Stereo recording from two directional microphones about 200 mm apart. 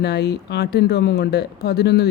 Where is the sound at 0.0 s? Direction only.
55° left (ahead or behind).